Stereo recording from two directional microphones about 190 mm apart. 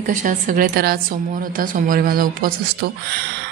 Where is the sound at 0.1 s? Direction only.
40° right (ahead or behind).